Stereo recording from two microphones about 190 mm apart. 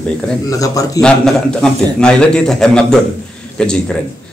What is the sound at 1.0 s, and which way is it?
A man's voice, 5° left (ahead or behind).